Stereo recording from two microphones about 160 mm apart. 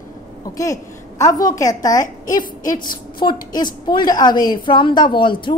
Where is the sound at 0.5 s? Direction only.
20° left (ahead or behind).